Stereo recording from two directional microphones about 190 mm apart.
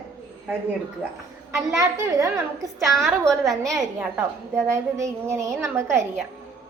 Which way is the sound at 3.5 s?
Centre (ahead or behind).